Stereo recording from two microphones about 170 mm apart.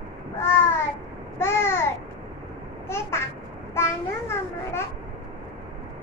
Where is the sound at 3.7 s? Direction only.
15° left (ahead or behind).